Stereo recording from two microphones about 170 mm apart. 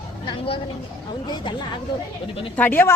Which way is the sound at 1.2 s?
25° left (ahead or behind).